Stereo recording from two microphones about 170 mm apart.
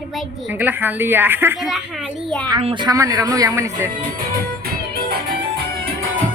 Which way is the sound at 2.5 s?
30° right (ahead or behind).